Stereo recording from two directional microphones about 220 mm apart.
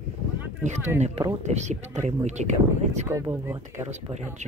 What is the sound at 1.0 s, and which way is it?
Speech, 30° right (ahead or behind).